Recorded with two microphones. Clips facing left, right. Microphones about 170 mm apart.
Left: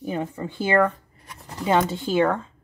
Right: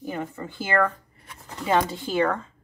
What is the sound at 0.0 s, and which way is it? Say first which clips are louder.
Speech: left 3 dB; 20° left (ahead or behind).